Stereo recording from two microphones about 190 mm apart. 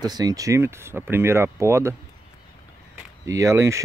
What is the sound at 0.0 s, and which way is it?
Speech, 20° right (ahead or behind).